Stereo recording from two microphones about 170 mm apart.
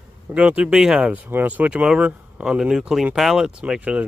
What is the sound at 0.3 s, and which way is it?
Speech, 10° right (ahead or behind).